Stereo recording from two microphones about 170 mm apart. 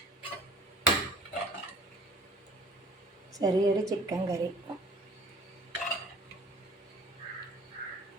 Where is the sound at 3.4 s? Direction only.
20° right (ahead or behind).